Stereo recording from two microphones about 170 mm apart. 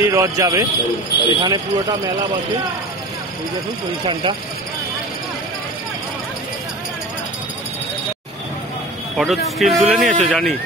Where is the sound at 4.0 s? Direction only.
30° right (ahead or behind).